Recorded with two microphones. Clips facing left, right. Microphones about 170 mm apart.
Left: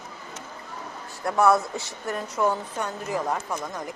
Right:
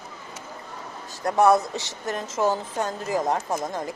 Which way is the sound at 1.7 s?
80° right.